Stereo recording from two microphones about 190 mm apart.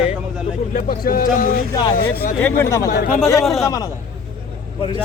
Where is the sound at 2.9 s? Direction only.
45° left (ahead or behind).